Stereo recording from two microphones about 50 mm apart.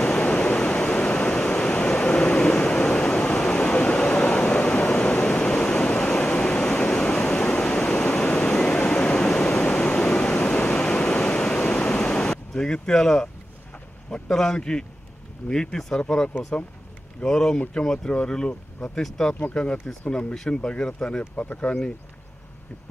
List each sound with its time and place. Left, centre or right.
0.0 s waves: left
4.4 s vehicle: centre
5.3 s waves: centre
8.4 s a sound: centre
14.1 s speech: centre
19.5 s speech: left